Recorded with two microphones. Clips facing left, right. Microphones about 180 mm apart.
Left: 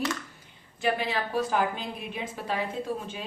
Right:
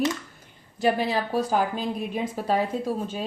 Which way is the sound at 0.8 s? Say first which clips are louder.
Right 5 dB; 40° right (ahead or behind).